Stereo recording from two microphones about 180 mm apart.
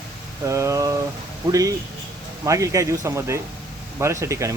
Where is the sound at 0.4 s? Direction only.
15° right (ahead or behind).